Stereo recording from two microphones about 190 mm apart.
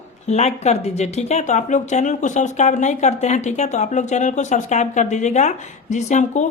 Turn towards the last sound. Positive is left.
turn(degrees=40)  # may be behind; listen again after turning